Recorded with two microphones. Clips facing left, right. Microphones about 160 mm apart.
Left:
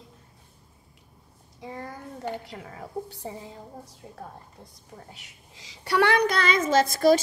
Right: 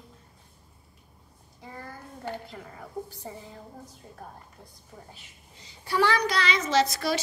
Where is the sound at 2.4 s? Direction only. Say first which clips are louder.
Left 3 dB; 85° left.